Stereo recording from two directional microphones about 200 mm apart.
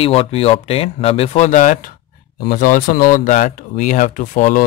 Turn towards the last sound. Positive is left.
turn(degrees=40)  # may be behind; listen again after turning